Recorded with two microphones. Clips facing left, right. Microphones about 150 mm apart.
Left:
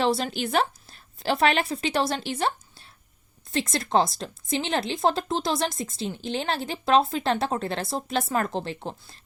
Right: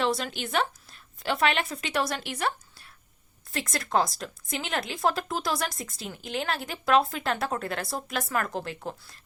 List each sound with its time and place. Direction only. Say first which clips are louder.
0.0 s a woman's voice: left 4 dB; 30° left (ahead or behind)